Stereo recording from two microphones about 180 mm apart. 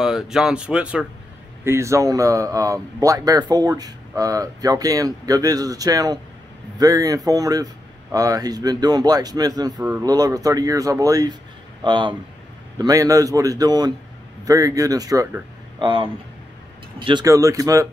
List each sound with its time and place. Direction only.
0.0 s speech: 5° right (ahead or behind); by 17.8 s 20° right (ahead or behind)